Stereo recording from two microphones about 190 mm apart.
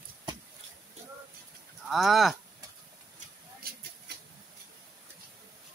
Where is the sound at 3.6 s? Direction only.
55° right (ahead or behind).